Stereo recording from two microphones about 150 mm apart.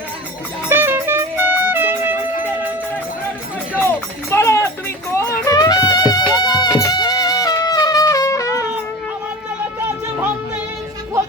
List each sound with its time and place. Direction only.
0.7 s music: 15° right (ahead or behind)
3.8 s music: 15° left (ahead or behind)